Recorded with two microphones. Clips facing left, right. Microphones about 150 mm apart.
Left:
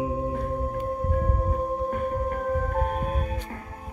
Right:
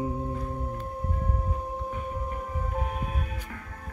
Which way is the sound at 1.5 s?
55° left (ahead or behind).